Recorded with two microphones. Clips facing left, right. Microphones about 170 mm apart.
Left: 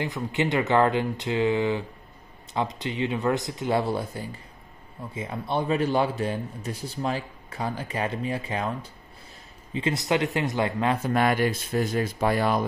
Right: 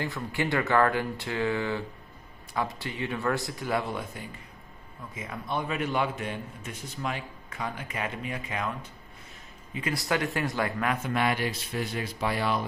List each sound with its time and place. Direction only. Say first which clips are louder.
0.0 s a man's voice: left 4 dB; 20° left (ahead or behind)
9.8 s speech: left 4 dB; 25° left (ahead or behind)
11.1 s speech: left 7 dB; 45° left (ahead or behind)